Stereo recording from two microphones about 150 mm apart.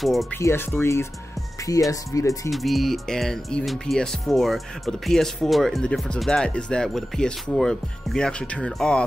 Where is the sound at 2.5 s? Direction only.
Centre (ahead or behind).